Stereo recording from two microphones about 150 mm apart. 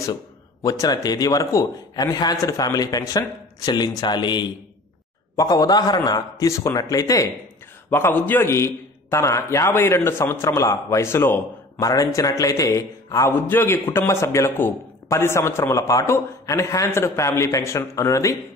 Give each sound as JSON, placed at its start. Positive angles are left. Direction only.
{"t": 0.0, "sound": "a man's voice", "side_deg": 25}